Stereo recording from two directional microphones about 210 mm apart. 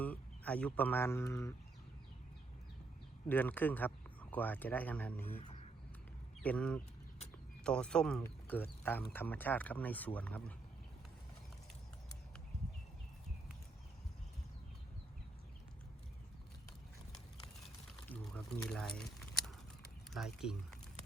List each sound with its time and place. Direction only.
0.0 s speech: 5° left (ahead or behind)
3.2 s speech: 10° left (ahead or behind)
5.4 s a sound: 35° left (ahead or behind)
6.4 s speech: 5° left (ahead or behind)
18.1 s speech: 5° left (ahead or behind)
18.9 s a sound: centre (ahead or behind)
20.1 s speech: centre (ahead or behind)